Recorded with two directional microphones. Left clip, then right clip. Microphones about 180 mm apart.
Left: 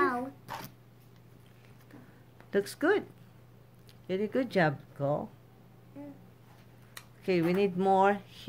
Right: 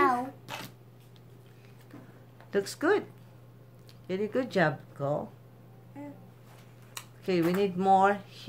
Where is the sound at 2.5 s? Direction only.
30° left (ahead or behind).